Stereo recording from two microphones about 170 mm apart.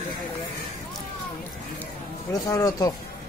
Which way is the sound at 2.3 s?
20° left (ahead or behind).